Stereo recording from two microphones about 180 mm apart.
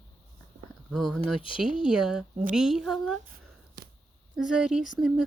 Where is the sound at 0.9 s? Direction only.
Centre (ahead or behind).